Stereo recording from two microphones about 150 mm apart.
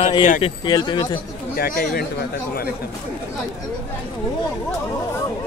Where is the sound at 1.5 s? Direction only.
75° left (ahead or behind).